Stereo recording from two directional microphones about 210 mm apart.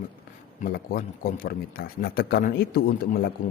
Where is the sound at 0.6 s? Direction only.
45° left (ahead or behind).